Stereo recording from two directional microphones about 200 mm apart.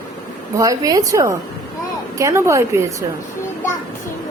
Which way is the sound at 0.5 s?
15° right (ahead or behind).